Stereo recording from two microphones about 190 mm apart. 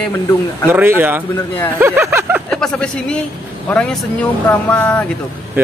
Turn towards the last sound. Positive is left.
turn(degrees=-10)  # may be behind; listen again after turning